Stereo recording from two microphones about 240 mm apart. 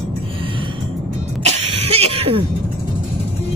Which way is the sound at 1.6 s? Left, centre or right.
Right.